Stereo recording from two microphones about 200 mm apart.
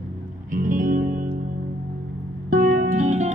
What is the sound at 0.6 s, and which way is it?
Music, 45° right (ahead or behind).